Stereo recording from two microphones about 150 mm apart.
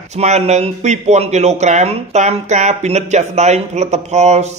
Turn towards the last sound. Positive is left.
turn(degrees=-50)  # may be behind; listen again after turning